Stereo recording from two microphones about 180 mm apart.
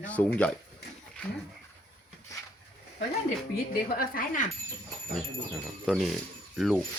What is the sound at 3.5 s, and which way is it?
Speech, 55° left (ahead or behind).